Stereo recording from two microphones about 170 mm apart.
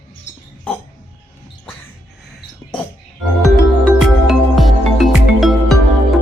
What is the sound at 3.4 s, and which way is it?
Music, centre (ahead or behind).